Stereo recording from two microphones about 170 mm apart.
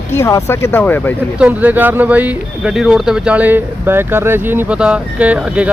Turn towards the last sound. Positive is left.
turn(degrees=-5)  # may be behind; listen again after turning